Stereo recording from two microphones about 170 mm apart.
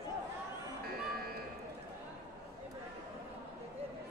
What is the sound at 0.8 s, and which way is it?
Music, 65° right (ahead or behind).